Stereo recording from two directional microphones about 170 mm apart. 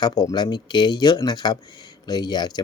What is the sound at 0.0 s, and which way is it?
Speech, 20° left (ahead or behind).